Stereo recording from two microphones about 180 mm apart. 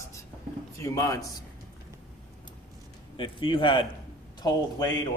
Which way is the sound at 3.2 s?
25° left (ahead or behind).